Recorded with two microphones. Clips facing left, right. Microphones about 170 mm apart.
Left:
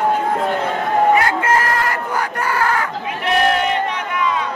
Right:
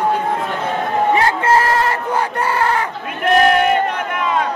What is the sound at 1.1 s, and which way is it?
Crowd, 30° right (ahead or behind).